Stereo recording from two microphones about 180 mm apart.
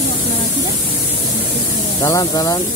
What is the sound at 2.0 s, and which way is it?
Speech, 20° left (ahead or behind).